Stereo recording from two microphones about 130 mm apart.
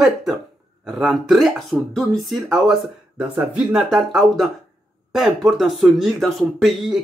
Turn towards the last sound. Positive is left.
turn(degrees=0)  # may be behind; listen again after turning